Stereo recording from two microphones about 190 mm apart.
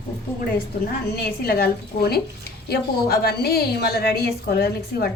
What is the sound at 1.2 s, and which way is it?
A woman's voice, 55° left (ahead or behind).